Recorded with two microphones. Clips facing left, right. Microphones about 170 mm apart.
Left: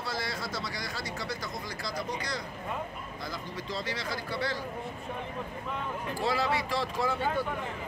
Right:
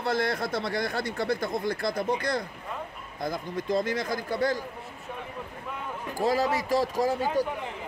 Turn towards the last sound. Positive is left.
turn(degrees=-40)  # may be behind; listen again after turning